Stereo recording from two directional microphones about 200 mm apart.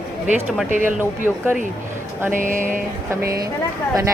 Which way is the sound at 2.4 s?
40° right (ahead or behind).